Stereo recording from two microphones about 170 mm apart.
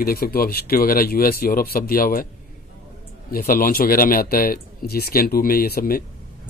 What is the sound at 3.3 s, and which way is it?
A man's voice, 60° left (ahead or behind).